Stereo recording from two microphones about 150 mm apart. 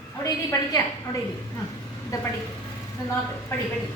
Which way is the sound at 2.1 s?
25° left (ahead or behind).